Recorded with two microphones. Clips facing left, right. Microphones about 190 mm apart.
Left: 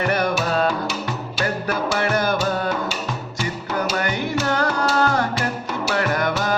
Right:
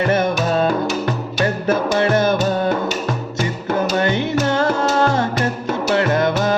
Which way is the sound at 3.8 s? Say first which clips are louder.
Right 5 dB; 25° right (ahead or behind).